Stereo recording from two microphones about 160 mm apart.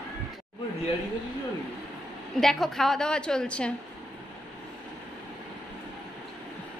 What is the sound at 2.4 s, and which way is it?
A woman's voice, centre (ahead or behind).